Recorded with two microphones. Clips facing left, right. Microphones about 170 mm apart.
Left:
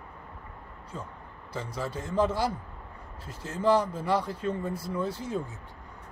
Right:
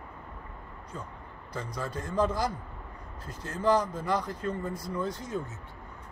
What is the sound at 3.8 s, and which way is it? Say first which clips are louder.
Speech: left 2 dB; 30° left (ahead or behind).